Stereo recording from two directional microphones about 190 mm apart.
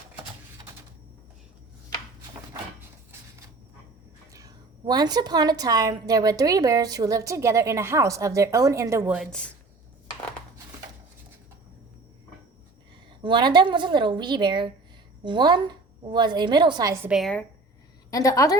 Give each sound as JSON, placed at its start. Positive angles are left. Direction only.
{"t": 4.3, "sound": "a woman's voice", "side_deg": -20}
{"t": 13.2, "sound": "a woman's voice", "side_deg": -25}
{"t": 17.1, "sound": "a woman's voice", "side_deg": 0}
{"t": 18.1, "sound": "a woman's voice", "side_deg": 20}